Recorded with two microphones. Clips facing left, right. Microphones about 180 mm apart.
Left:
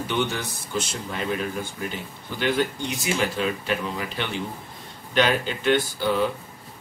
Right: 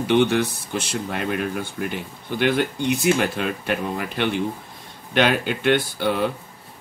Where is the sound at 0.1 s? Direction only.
65° right (ahead or behind).